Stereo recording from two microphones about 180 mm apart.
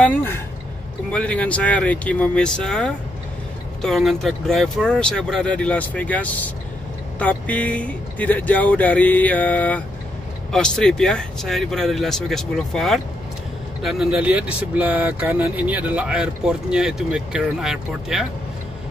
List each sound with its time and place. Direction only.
0.0 s speech: 10° left (ahead or behind)